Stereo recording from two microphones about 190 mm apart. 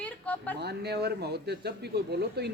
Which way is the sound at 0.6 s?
60° right (ahead or behind).